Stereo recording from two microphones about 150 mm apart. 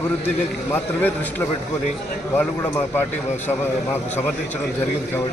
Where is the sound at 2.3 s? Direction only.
15° left (ahead or behind).